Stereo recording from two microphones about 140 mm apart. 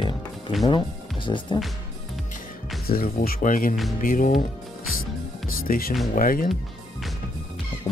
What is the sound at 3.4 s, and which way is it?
Speech, 80° left.